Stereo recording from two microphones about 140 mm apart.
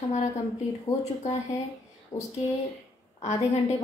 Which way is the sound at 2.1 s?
60° left (ahead or behind).